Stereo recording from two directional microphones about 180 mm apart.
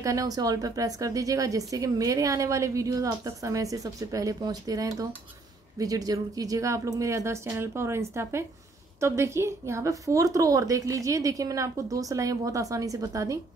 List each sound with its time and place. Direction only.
0.0 s a woman's voice: 20° right (ahead or behind)